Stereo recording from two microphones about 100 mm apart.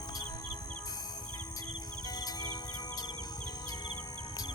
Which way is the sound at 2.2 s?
40° left (ahead or behind).